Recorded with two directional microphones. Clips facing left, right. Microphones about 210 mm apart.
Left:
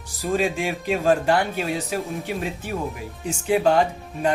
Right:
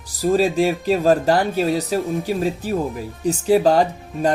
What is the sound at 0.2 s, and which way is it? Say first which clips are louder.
Speech: right 6 dB; 35° right (ahead or behind).